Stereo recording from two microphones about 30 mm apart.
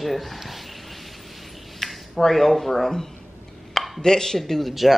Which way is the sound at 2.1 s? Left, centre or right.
Centre.